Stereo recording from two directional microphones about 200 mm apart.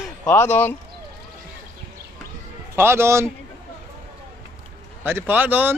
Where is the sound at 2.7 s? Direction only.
10° right (ahead or behind).